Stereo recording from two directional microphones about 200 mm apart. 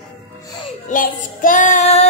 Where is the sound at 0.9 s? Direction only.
40° left (ahead or behind).